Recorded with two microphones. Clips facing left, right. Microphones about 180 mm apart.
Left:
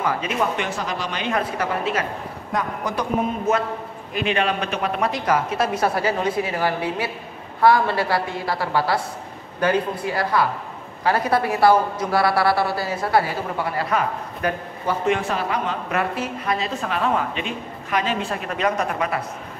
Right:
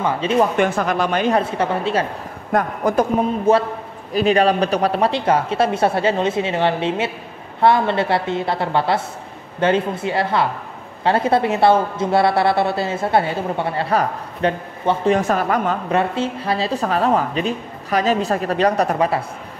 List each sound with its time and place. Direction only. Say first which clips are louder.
0.0 s a woman's voice: right 6 dB; 30° right (ahead or behind)
0.6 s speech: right 8 dB; 55° right (ahead or behind)
1.3 s speech: right 5 dB; 30° right (ahead or behind)
2.5 s speech: right 7 dB; 55° right (ahead or behind)
3.5 s a woman's voice: right 6 dB; 30° right (ahead or behind)
15.1 s speech: right 6 dB; 45° right (ahead or behind)
15.9 s speech: right 5 dB; 30° right (ahead or behind)